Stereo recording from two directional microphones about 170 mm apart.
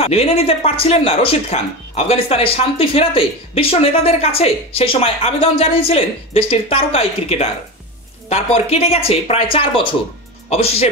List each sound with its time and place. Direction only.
0.0 s speech: 35° left (ahead or behind)